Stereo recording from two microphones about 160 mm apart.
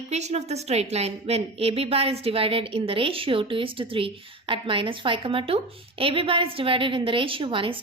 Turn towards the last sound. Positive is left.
turn(degrees=-35)  # may be behind; listen again after turning